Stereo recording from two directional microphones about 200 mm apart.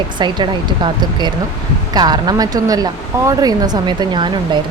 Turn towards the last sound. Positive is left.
turn(degrees=-25)  # may be behind; listen again after turning